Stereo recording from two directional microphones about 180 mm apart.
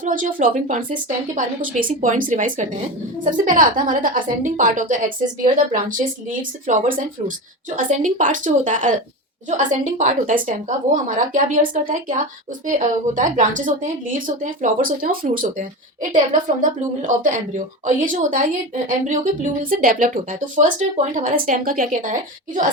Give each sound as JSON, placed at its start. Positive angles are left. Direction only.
{"t": 0.0, "sound": "a woman's voice", "side_deg": -50}
{"t": 6.7, "sound": "a woman's voice", "side_deg": -50}